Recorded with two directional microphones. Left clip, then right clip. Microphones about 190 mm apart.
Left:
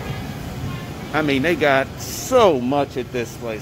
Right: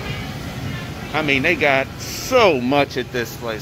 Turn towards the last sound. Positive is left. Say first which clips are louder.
# right 3 dB
turn(degrees=0)  # may be behind; listen again after turning